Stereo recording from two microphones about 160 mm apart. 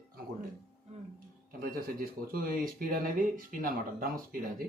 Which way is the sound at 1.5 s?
65° right (ahead or behind).